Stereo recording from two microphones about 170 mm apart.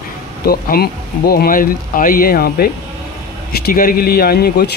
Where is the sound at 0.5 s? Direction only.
60° left (ahead or behind).